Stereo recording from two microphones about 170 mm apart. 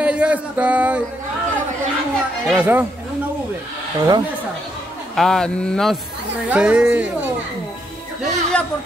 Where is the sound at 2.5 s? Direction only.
10° right (ahead or behind).